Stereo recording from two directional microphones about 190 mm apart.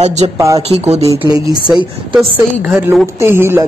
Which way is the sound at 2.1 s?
5° right (ahead or behind).